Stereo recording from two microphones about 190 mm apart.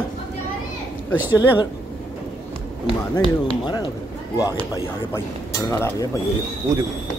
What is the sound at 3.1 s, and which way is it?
Speech, 25° left (ahead or behind).